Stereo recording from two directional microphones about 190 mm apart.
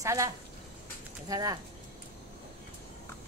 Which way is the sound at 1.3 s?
20° right (ahead or behind).